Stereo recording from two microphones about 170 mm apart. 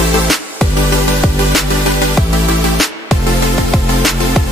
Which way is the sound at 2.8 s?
Centre (ahead or behind).